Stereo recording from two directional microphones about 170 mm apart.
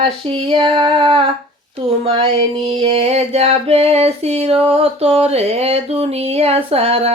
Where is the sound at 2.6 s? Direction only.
35° right (ahead or behind).